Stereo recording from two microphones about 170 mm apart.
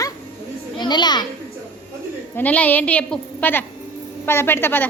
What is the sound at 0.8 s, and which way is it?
Speech, 25° left (ahead or behind).